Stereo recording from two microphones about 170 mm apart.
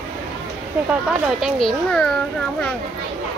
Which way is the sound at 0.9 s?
Centre (ahead or behind).